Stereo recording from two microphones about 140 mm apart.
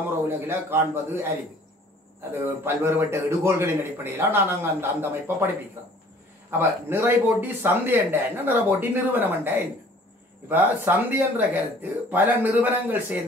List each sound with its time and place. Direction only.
0.5 s a man's voice: 15° right (ahead or behind)
2.3 s a man's voice: 20° right (ahead or behind)
6.6 s a man's voice: 15° right (ahead or behind)